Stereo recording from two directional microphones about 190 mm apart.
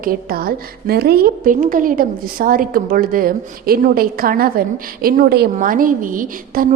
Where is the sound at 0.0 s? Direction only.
50° right (ahead or behind).